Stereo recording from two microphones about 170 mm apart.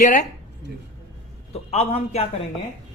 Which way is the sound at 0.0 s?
45° left (ahead or behind).